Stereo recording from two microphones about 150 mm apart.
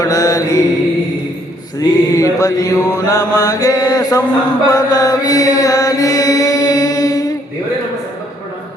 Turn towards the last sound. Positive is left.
turn(degrees=25)  # may be behind; listen again after turning